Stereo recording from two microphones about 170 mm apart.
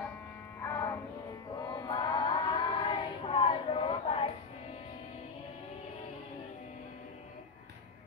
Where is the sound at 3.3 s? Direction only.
35° left (ahead or behind).